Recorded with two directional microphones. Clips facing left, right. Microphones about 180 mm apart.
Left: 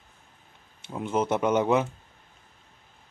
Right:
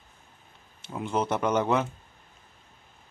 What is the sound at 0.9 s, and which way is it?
Speech, 5° left (ahead or behind).